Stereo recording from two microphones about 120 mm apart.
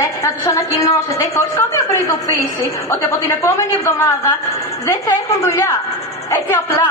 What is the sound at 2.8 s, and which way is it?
A woman's voice, 25° left (ahead or behind).